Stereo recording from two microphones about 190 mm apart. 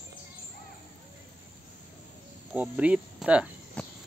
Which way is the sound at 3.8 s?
5° left (ahead or behind).